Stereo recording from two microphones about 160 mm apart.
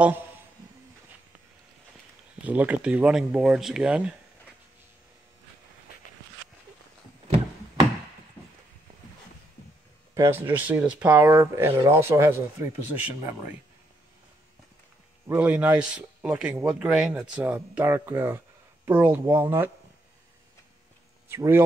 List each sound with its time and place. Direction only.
2.4 s a man's voice: 10° right (ahead or behind)
10.1 s a man's voice: 15° right (ahead or behind)
15.2 s a man's voice: 10° right (ahead or behind)
21.3 s a man's voice: 15° right (ahead or behind)